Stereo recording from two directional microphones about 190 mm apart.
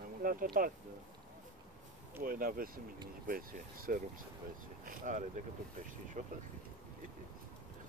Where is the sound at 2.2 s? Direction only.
50° right (ahead or behind).